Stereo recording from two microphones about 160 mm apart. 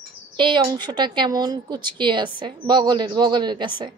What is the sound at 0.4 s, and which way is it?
A woman's voice, 30° right (ahead or behind).